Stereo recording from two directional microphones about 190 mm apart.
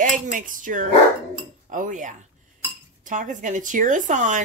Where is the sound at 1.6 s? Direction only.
45° right (ahead or behind).